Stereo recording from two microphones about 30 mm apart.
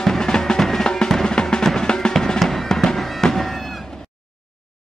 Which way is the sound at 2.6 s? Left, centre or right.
Centre.